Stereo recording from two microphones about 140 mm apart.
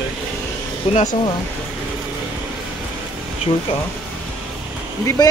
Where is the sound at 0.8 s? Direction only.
45° left (ahead or behind).